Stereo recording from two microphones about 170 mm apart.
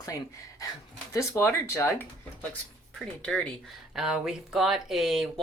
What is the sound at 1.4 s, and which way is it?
Speech, 15° left (ahead or behind).